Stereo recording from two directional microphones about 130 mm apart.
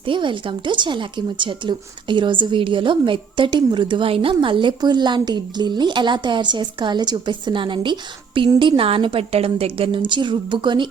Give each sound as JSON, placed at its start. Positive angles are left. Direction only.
{"t": 0.0, "sound": "a woman's voice", "side_deg": -40}